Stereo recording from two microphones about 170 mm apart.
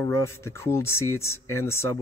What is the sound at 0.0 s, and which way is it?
Speech, 15° left (ahead or behind).